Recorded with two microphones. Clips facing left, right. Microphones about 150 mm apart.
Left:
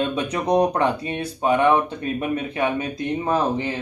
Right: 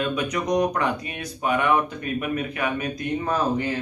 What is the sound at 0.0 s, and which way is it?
Speech, 30° left (ahead or behind).